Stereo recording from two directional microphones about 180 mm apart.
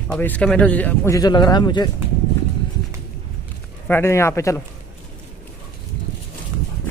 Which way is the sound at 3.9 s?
15° left (ahead or behind).